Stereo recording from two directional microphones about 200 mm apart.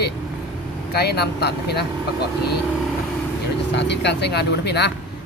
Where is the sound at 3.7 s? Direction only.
60° left (ahead or behind).